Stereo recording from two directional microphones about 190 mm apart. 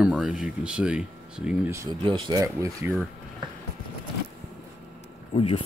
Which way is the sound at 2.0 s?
25° right (ahead or behind).